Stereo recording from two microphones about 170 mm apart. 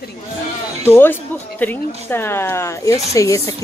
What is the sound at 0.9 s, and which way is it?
Speech, 10° left (ahead or behind).